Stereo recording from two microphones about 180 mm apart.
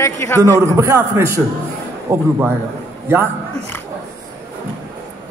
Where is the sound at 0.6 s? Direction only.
15° right (ahead or behind).